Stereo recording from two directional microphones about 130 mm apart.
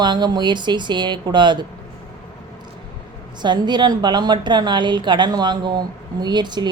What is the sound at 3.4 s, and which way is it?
A woman's voice, 35° right (ahead or behind).